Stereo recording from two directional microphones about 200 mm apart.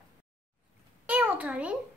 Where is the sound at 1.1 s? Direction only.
5° right (ahead or behind).